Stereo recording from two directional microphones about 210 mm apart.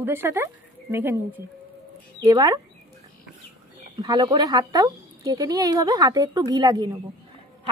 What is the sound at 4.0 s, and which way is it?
Speech, 20° right (ahead or behind).